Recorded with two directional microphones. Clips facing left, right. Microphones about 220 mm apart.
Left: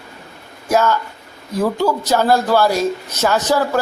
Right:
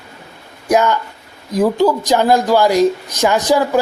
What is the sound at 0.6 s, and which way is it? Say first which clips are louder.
Speech: right 2 dB; 15° right (ahead or behind).